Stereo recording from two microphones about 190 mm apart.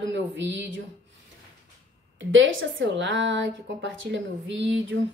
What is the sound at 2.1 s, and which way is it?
A woman's voice, 85° right.